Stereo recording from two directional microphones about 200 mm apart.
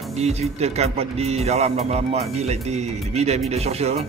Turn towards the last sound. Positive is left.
turn(degrees=-30)  # may be behind; listen again after turning